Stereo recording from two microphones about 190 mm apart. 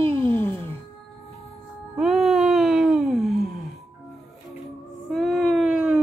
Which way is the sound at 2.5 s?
Centre (ahead or behind).